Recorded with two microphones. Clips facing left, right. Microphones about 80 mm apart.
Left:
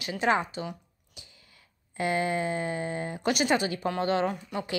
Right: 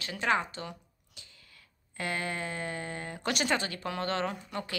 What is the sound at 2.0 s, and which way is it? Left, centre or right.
Speech, centre.